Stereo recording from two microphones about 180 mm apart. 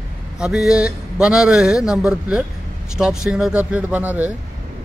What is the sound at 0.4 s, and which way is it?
A man's voice, 5° right (ahead or behind).